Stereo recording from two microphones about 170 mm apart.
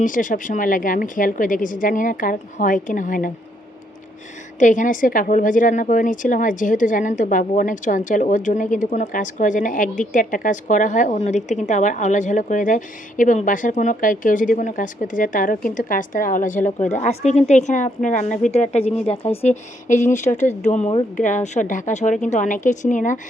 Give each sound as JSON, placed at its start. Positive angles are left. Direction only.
{"t": 0.0, "sound": "a woman's voice", "side_deg": 50}
{"t": 4.6, "sound": "a woman's voice", "side_deg": 50}